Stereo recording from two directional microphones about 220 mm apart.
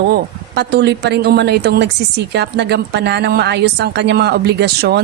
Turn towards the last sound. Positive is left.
turn(degrees=-50)  # may be behind; listen again after turning